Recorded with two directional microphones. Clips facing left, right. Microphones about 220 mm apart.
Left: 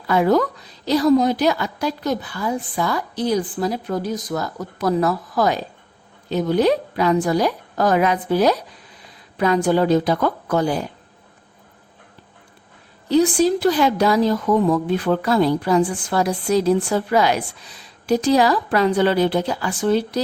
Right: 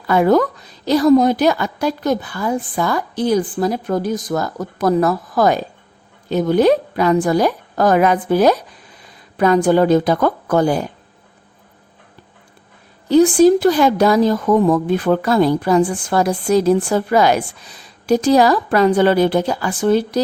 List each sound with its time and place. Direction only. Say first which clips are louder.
0.1 s a woman's voice: right 3 dB; 50° right (ahead or behind)
13.1 s a woman's voice: right 6 dB; 50° right (ahead or behind)